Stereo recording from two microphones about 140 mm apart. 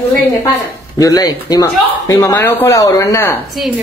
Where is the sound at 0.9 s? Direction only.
25° left (ahead or behind).